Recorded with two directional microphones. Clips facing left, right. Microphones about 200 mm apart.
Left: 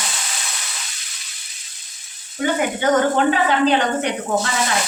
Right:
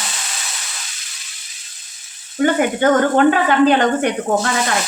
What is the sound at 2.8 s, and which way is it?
A woman's voice, 50° right (ahead or behind).